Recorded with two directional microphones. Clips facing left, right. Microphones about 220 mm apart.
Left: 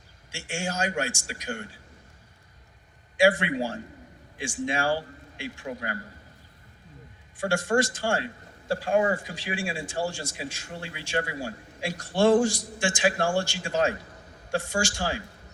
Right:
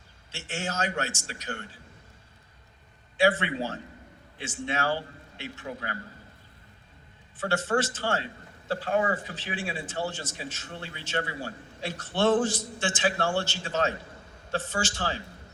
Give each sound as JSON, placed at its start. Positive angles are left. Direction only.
{"t": 0.3, "sound": "speech", "side_deg": 10}
{"t": 3.2, "sound": "speech", "side_deg": 10}
{"t": 7.3, "sound": "speech", "side_deg": 10}